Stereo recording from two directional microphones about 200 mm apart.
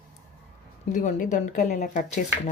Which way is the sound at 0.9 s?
40° left (ahead or behind).